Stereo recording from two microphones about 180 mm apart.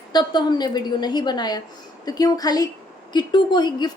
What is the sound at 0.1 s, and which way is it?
A woman's voice, 25° left (ahead or behind).